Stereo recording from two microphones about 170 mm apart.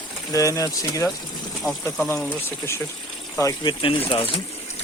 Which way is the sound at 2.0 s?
15° left (ahead or behind).